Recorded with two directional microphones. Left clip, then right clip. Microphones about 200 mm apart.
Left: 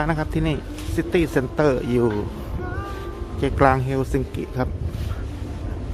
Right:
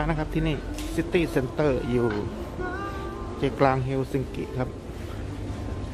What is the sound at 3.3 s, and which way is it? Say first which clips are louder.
Speech: left 5 dB; 25° left (ahead or behind).